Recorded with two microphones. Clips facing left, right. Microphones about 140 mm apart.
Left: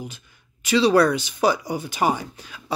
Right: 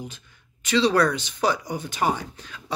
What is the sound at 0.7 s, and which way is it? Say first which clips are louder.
Speech: left 3 dB; 10° left (ahead or behind).